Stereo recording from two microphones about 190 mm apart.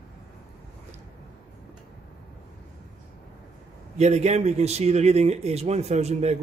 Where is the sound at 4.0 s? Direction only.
35° right (ahead or behind).